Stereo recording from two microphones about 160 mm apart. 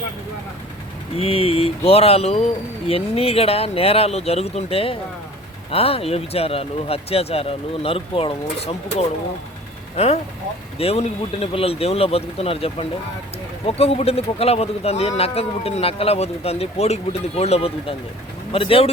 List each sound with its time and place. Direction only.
1.1 s a man's voice: 40° left (ahead or behind)